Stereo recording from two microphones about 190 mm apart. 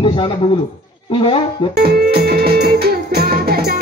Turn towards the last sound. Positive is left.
turn(degrees=-55)  # may be behind; listen again after turning